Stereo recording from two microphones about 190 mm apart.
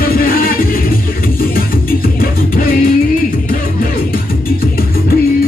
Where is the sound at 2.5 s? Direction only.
50° left (ahead or behind).